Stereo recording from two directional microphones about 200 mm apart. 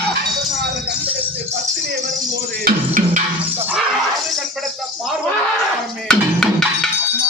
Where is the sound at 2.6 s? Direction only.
45° right (ahead or behind).